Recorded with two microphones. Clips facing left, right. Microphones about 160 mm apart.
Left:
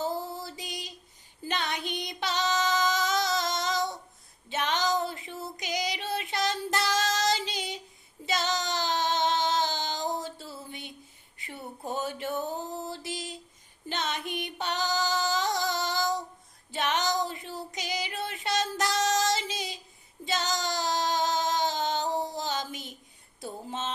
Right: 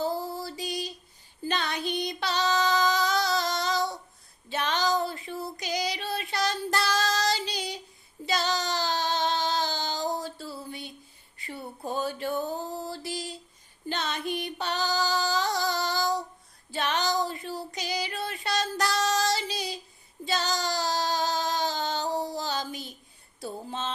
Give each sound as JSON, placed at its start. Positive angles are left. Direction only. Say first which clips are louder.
{"t": 0.0, "sound": "music", "louder": "right 2 dB", "side_deg": 20}
{"t": 1.5, "sound": "female singing", "louder": "right 2 dB", "side_deg": 20}
{"t": 4.4, "sound": "child singing", "louder": "right 1 dB", "side_deg": 20}
{"t": 11.3, "sound": "a sound", "louder": "right 2 dB", "side_deg": 20}
{"t": 13.8, "sound": "music", "louder": "right 2 dB", "side_deg": 20}
{"t": 16.7, "sound": "child singing", "louder": "right 1 dB", "side_deg": 20}
{"t": 23.4, "sound": "a sound", "louder": "right 1 dB", "side_deg": 20}